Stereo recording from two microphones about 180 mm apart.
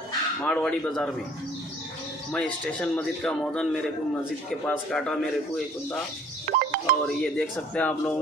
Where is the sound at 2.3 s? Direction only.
5° left (ahead or behind).